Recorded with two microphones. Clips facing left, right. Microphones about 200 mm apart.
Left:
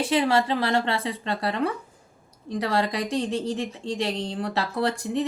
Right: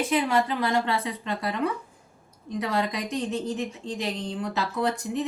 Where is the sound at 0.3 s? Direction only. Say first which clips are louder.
Left 1 dB; 30° left (ahead or behind).